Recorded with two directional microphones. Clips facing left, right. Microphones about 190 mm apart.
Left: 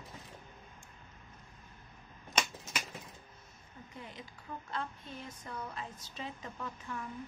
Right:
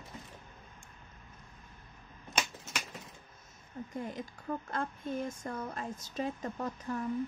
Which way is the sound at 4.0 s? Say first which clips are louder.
Right 8 dB; 45° right (ahead or behind).